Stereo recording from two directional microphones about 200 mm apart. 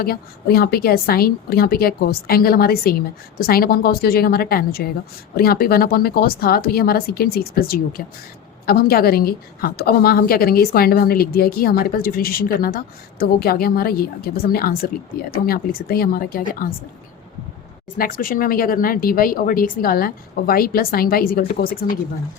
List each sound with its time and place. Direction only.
0.0 s a woman's voice: 50° left (ahead or behind)
17.9 s a woman's voice: 45° left (ahead or behind)